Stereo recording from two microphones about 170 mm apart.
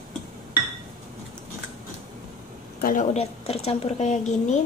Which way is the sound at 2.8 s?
50° left (ahead or behind).